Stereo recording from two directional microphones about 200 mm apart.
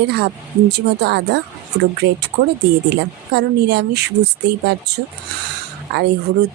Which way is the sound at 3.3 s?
55° right (ahead or behind).